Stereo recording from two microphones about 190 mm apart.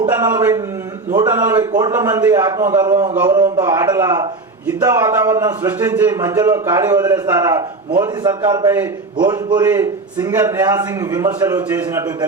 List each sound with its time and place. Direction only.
0.2 s a man's voice: 15° right (ahead or behind)